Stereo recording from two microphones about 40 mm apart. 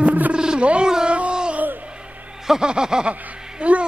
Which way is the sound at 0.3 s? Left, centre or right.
Right.